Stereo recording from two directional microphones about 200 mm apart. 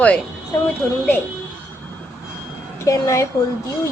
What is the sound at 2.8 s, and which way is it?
Speech, 15° left (ahead or behind).